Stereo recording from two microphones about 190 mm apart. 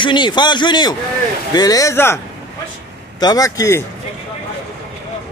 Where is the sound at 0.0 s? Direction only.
25° left (ahead or behind).